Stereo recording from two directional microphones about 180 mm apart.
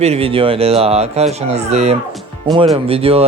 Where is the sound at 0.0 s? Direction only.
35° right (ahead or behind).